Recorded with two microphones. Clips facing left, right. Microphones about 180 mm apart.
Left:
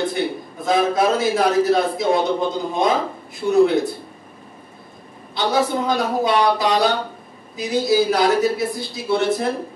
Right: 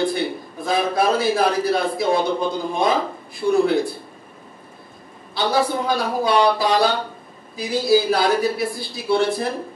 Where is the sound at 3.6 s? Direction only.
20° left (ahead or behind).